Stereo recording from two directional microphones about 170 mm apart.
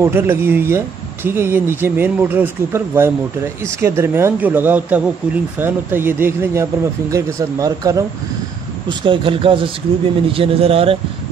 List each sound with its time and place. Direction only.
0.0 s speech: 15° right (ahead or behind)
8.8 s speech: 30° right (ahead or behind)